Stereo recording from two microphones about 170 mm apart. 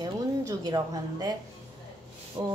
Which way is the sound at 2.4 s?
25° right (ahead or behind).